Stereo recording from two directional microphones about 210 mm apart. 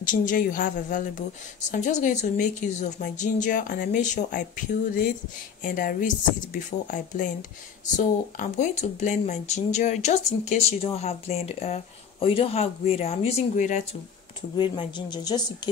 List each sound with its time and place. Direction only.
0.0 s speech: 40° left (ahead or behind)
5.6 s speech: 45° left (ahead or behind)
14.6 s a woman's voice: 20° left (ahead or behind)